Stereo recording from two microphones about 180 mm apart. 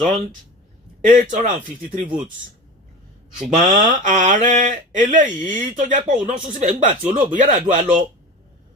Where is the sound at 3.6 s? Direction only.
45° right (ahead or behind).